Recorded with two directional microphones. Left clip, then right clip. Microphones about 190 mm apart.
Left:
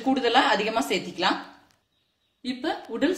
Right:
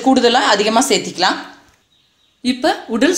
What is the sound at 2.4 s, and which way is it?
Speech, 50° right (ahead or behind).